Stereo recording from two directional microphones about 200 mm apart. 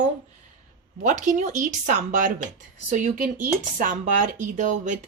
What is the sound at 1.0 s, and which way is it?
Speech, 40° right (ahead or behind).